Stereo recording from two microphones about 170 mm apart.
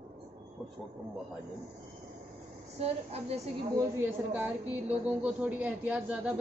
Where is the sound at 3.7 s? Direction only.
10° right (ahead or behind).